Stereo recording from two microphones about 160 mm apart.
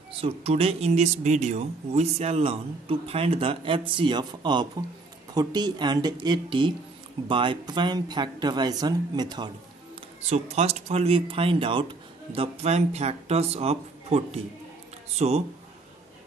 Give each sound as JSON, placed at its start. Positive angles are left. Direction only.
{"t": 0.1, "sound": "speech", "side_deg": -40}
{"t": 10.3, "sound": "speech", "side_deg": -40}